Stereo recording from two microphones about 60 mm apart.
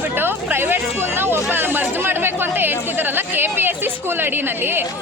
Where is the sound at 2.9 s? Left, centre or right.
Right.